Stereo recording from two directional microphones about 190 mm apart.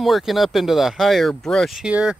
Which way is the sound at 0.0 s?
Centre (ahead or behind).